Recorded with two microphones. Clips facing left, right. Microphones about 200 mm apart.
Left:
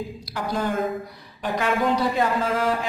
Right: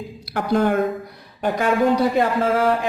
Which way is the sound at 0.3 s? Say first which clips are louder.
Right 8 dB; 60° right (ahead or behind).